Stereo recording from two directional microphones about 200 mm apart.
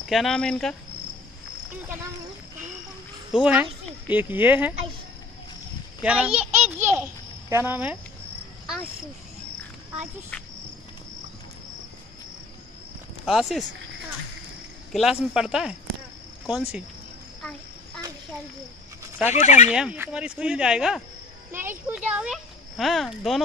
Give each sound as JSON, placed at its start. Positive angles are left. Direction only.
{"t": 0.1, "sound": "speech", "side_deg": 0}
{"t": 3.3, "sound": "speech", "side_deg": -5}
{"t": 6.0, "sound": "a child's voice", "side_deg": -5}
{"t": 13.2, "sound": "speech", "side_deg": 0}
{"t": 14.9, "sound": "speech", "side_deg": 0}
{"t": 19.1, "sound": "speech", "side_deg": -10}
{"t": 19.4, "sound": "speech", "side_deg": 35}
{"t": 19.7, "sound": "speech", "side_deg": -5}